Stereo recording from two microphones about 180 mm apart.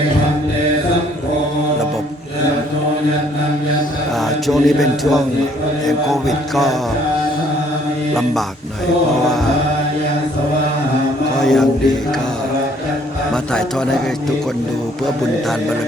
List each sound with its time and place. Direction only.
4.4 s a man's voice: centre (ahead or behind)
11.3 s a sound: centre (ahead or behind)
13.3 s a man's voice: 5° left (ahead or behind)